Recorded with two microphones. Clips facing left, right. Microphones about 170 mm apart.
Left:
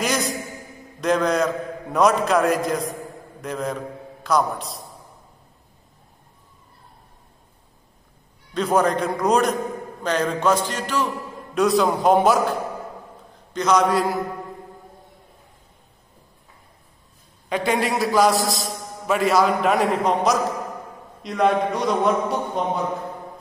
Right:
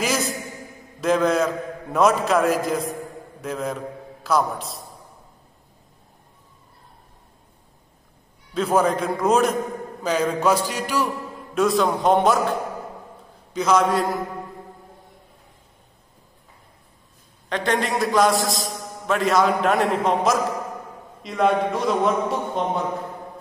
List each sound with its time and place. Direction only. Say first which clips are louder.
0.0 s a sound: even; centre (ahead or behind)
1.0 s a man's voice: right 1 dB; centre (ahead or behind)
8.5 s a man's voice: even; centre (ahead or behind)
10.0 s a sound: even; 10° right (ahead or behind)
11.5 s a man's voice: left 1 dB; centre (ahead or behind)
17.5 s a man's voice: left 1 dB; 5° left (ahead or behind)